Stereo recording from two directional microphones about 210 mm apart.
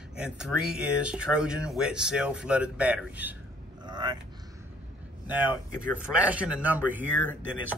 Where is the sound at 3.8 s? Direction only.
20° right (ahead or behind).